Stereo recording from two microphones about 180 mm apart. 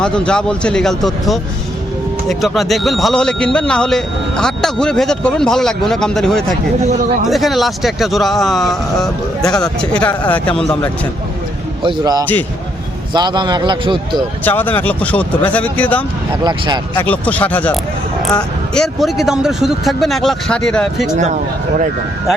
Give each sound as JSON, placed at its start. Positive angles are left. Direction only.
{"t": 0.0, "sound": "a man's voice", "side_deg": 5}
{"t": 2.4, "sound": "a man's voice", "side_deg": 0}
{"t": 11.8, "sound": "speech", "side_deg": -25}
{"t": 12.2, "sound": "speech", "side_deg": 10}
{"t": 13.1, "sound": "speech", "side_deg": -25}
{"t": 14.4, "sound": "speech", "side_deg": 10}
{"t": 16.4, "sound": "speech", "side_deg": -25}
{"t": 16.9, "sound": "a man's voice", "side_deg": 10}